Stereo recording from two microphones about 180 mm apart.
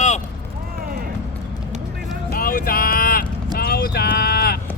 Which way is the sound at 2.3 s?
55° left (ahead or behind).